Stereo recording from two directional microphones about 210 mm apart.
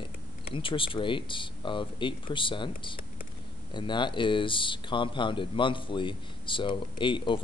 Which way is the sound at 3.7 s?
20° left (ahead or behind).